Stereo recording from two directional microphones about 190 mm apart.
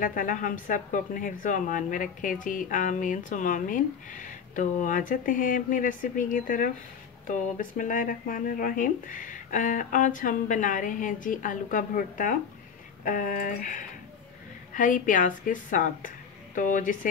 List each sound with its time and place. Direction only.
0.0 s a woman's voice: 45° left (ahead or behind)